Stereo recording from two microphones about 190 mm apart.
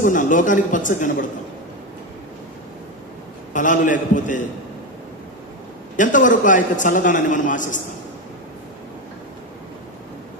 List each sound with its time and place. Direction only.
0.0 s a man's voice: 45° left (ahead or behind)
3.5 s a man's voice: 40° left (ahead or behind)
5.9 s a man's voice: 45° left (ahead or behind)